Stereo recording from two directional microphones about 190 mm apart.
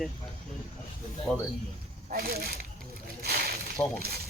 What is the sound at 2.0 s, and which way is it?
Speech, 50° right (ahead or behind).